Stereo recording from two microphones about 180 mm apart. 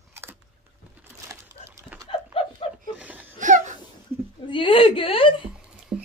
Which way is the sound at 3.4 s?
45° right (ahead or behind).